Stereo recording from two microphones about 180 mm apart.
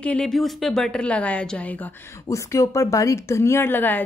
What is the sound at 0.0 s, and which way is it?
A woman's voice, 5° left (ahead or behind).